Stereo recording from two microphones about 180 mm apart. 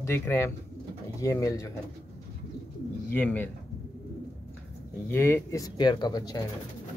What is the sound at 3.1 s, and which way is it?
Speech, 10° left (ahead or behind).